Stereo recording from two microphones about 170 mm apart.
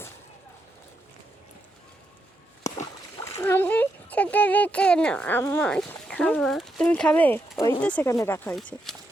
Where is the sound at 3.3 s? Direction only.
15° left (ahead or behind).